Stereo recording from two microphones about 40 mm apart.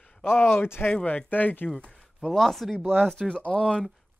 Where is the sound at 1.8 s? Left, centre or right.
Left.